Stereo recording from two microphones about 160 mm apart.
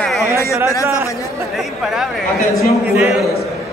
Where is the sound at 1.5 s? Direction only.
Centre (ahead or behind).